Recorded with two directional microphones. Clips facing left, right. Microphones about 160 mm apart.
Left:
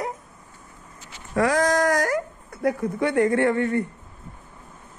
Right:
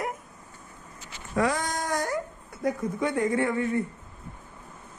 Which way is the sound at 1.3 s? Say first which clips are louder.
Left 6 dB; 90° left.